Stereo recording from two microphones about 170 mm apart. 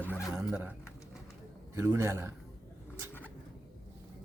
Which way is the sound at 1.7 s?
15° right (ahead or behind).